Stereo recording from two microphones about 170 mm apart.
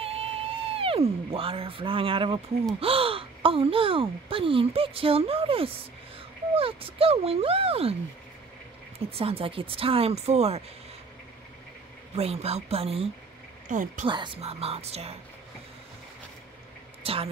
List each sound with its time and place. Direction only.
0.0 s a sound: 35° right (ahead or behind)
2.8 s speech: 35° right (ahead or behind)
9.2 s speech: 35° right (ahead or behind)
12.2 s speech: 35° right (ahead or behind)
13.7 s speech: 50° right (ahead or behind)
14.0 s speech: 30° right (ahead or behind)
17.0 s a woman's voice: 35° right (ahead or behind)